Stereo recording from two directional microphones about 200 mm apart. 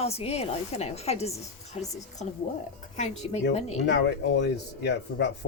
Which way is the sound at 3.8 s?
55° left (ahead or behind).